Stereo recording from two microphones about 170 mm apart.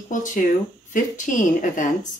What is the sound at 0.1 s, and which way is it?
Speech, 50° left (ahead or behind).